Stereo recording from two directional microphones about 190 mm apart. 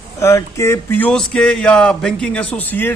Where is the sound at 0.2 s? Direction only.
15° left (ahead or behind).